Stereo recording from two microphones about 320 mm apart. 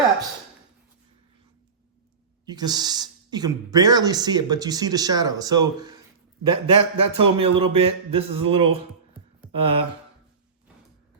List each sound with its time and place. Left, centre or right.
2.5 s speech: centre